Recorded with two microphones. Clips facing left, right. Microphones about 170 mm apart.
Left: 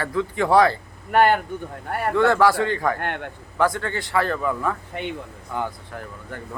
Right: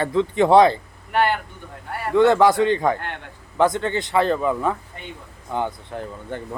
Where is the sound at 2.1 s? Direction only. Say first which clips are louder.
Right 3 dB; 20° right (ahead or behind).